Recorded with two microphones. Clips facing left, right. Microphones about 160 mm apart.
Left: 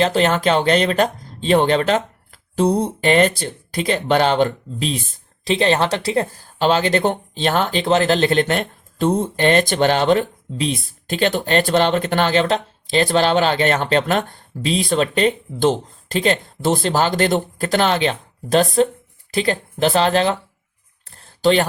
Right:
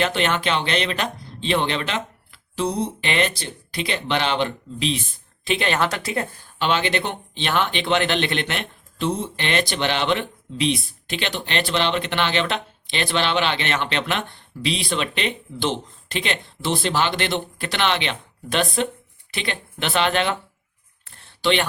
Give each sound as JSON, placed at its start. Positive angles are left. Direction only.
{"t": 0.0, "sound": "speech", "side_deg": 40}
{"t": 5.5, "sound": "speech", "side_deg": 30}
{"t": 21.2, "sound": "a sound", "side_deg": 40}